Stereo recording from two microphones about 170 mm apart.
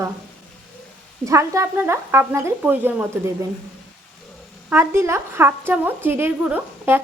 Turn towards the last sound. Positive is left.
turn(degrees=-10)  # may be behind; listen again after turning